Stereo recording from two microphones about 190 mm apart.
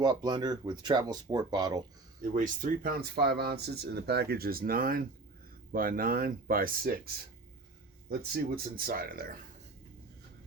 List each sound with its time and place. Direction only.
0.0 s speech: 20° right (ahead or behind)
2.3 s speech: 45° right (ahead or behind)
8.4 s speech: 50° right (ahead or behind)